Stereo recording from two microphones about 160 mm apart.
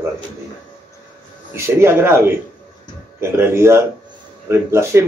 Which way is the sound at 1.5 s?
15° right (ahead or behind).